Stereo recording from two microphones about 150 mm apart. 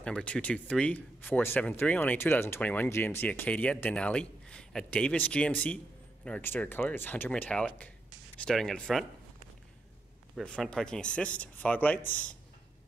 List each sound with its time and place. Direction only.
0.0 s speech: 5° left (ahead or behind)
10.3 s speech: 5° left (ahead or behind)